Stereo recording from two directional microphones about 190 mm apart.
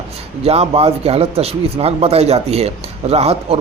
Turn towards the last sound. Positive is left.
turn(degrees=-35)  # may be behind; listen again after turning